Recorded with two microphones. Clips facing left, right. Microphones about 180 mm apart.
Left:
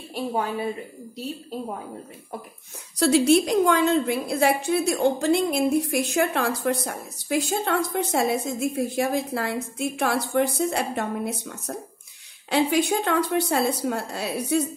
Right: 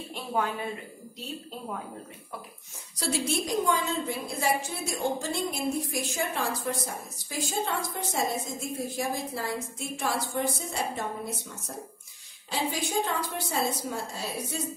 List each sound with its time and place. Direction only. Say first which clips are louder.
3.0 s a woman's voice: left 12 dB; 70° left (ahead or behind)